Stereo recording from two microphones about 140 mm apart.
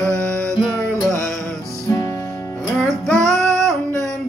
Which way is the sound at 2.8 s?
5° left (ahead or behind).